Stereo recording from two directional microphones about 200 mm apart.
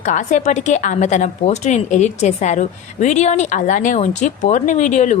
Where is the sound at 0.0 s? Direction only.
35° left (ahead or behind).